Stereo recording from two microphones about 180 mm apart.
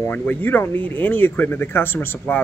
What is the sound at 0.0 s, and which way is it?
Speech, 10° left (ahead or behind).